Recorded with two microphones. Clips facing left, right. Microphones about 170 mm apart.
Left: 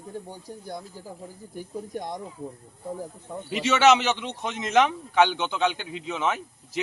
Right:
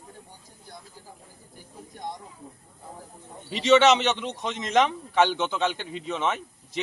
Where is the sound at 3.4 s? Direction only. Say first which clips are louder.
Right 1 dB; 5° left (ahead or behind).